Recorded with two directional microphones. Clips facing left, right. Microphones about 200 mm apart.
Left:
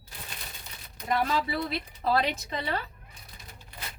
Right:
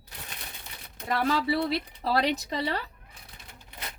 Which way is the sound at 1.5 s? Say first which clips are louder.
Right 5 dB; 30° right (ahead or behind).